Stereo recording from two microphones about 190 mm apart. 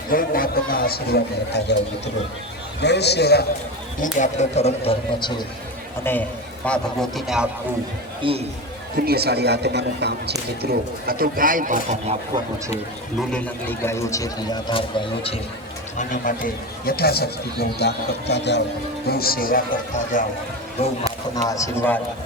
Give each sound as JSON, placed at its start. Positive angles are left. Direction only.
{"t": 0.1, "sound": "speech", "side_deg": 50}
{"t": 2.8, "sound": "speech", "side_deg": 60}
{"t": 4.0, "sound": "speech", "side_deg": 40}
{"t": 6.1, "sound": "speech", "side_deg": 10}
{"t": 6.7, "sound": "a man's voice", "side_deg": 0}
{"t": 8.2, "sound": "a man's voice", "side_deg": -30}
{"t": 9.0, "sound": "a man's voice", "side_deg": -55}
{"t": 13.3, "sound": "speech", "side_deg": 10}
{"t": 16.0, "sound": "speech", "side_deg": 45}
{"t": 19.0, "sound": "speech", "side_deg": 55}
{"t": 21.4, "sound": "speech", "side_deg": 15}